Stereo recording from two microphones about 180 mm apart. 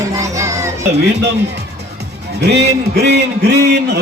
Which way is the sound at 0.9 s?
70° right (ahead or behind).